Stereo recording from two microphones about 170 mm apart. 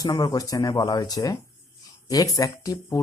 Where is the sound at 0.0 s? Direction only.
20° left (ahead or behind).